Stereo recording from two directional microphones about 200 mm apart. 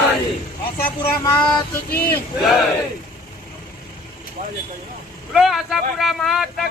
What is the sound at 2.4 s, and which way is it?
Speech, centre (ahead or behind).